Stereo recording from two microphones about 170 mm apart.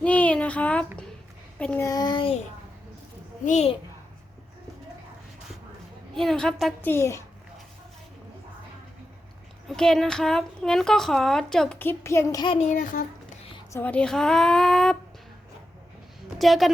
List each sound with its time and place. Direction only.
0.0 s a sound: 10° left (ahead or behind)
1.5 s a woman's voice: 5° left (ahead or behind)
1.9 s a child's voice: 25° left (ahead or behind)
3.4 s a child's voice: 40° left (ahead or behind)
6.1 s a woman's voice: 5° left (ahead or behind)
6.8 s a woman's voice: 15° left (ahead or behind)
9.6 s a woman's voice: centre (ahead or behind); by 12.5 s 20° left (ahead or behind)
12.5 s speech: 45° left (ahead or behind)
13.7 s a woman's voice: 10° left (ahead or behind)
16.4 s a woman's voice: centre (ahead or behind)